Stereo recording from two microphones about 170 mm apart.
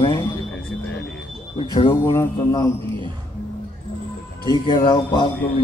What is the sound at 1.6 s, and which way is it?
A man's voice, 30° left (ahead or behind).